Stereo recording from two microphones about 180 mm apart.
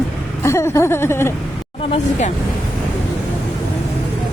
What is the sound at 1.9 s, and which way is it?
Speech, 40° left (ahead or behind).